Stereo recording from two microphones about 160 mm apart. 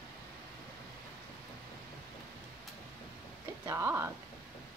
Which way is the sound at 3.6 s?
15° right (ahead or behind).